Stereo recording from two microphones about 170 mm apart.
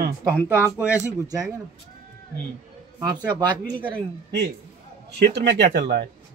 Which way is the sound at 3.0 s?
25° right (ahead or behind).